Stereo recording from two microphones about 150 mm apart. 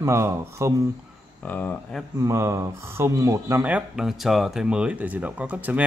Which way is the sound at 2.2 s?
20° right (ahead or behind).